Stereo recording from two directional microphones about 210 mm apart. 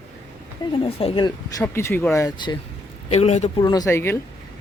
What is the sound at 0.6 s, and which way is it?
Speech, 20° left (ahead or behind).